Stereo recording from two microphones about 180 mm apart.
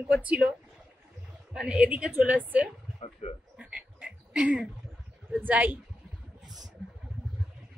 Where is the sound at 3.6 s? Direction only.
5° right (ahead or behind).